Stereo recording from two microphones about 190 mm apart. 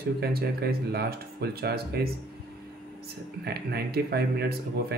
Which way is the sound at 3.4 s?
55° right (ahead or behind).